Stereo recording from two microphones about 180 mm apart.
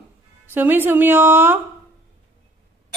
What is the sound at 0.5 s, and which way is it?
A woman's voice, 10° right (ahead or behind).